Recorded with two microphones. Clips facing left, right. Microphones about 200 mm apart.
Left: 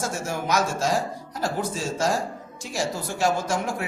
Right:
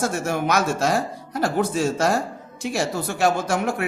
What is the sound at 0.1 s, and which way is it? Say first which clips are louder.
A woman's voice: right 4 dB; 65° right (ahead or behind).